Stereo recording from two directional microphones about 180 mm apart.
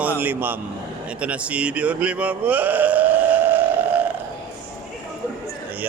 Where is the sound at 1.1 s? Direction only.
5° right (ahead or behind).